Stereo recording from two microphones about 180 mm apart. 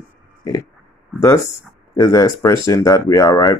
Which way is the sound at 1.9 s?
20° left (ahead or behind).